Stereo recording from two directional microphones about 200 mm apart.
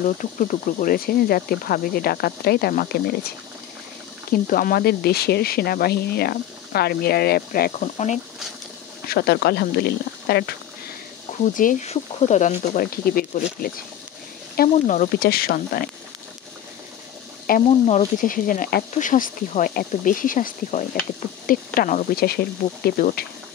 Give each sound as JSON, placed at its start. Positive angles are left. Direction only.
{"t": 0.0, "sound": "speech", "side_deg": 40}
{"t": 4.3, "sound": "speech", "side_deg": 45}
{"t": 7.8, "sound": "speech", "side_deg": 35}
{"t": 9.0, "sound": "speech", "side_deg": 50}
{"t": 11.5, "sound": "speech", "side_deg": 35}
{"t": 17.6, "sound": "speech", "side_deg": 35}